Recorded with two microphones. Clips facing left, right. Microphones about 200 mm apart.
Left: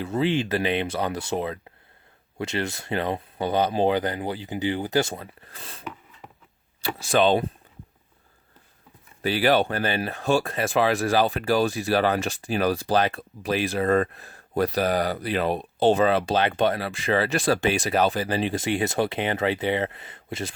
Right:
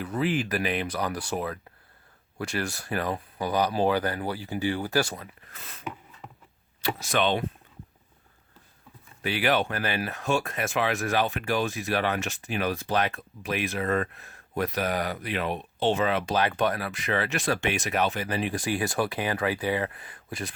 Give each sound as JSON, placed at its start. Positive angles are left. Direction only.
{"t": 0.0, "sound": "speech", "side_deg": 25}
{"t": 6.8, "sound": "speech", "side_deg": 30}
{"t": 9.2, "sound": "speech", "side_deg": 35}